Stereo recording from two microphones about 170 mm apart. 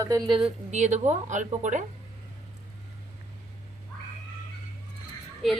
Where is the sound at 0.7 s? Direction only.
45° right (ahead or behind).